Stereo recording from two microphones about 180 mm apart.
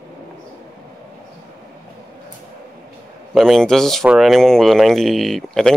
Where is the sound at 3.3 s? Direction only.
Centre (ahead or behind).